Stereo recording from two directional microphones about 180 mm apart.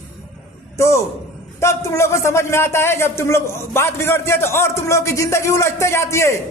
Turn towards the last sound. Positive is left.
turn(degrees=15)  # may be behind; listen again after turning